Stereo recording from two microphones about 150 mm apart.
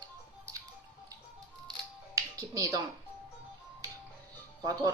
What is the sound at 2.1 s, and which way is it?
Speech, 25° right (ahead or behind).